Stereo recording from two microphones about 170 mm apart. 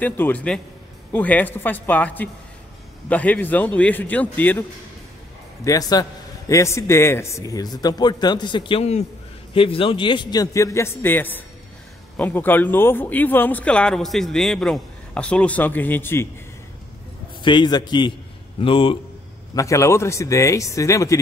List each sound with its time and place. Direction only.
0.0 s speech: 10° left (ahead or behind)
5.6 s speech: 20° left (ahead or behind)
17.4 s speech: 25° left (ahead or behind)
19.5 s speech: 20° left (ahead or behind)